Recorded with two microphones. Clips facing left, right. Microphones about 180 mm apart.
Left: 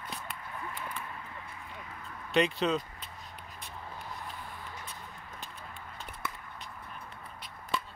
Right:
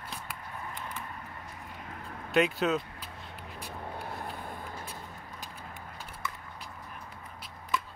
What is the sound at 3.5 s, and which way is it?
Vehicle, 35° right (ahead or behind).